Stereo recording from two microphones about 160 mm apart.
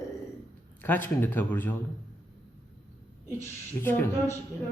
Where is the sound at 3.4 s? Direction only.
15° left (ahead or behind).